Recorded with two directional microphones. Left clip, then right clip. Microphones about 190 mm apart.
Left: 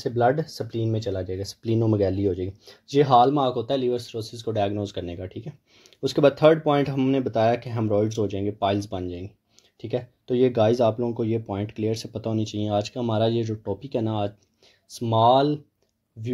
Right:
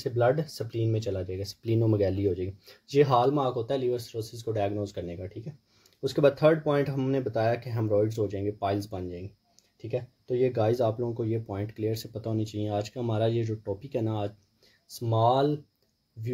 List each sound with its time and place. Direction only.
0.3 s speech: 20° left (ahead or behind)